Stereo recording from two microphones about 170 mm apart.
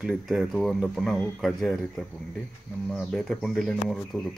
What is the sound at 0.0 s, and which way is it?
Speech, centre (ahead or behind).